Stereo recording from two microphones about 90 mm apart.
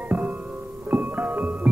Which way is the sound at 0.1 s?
20° right (ahead or behind).